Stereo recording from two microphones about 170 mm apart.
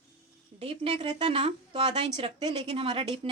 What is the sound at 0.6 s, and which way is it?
A woman's voice, 35° right (ahead or behind).